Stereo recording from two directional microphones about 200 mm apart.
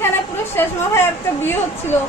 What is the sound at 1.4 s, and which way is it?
Speech, 10° left (ahead or behind).